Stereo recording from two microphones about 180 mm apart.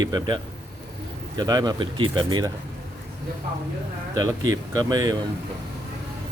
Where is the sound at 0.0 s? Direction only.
20° right (ahead or behind).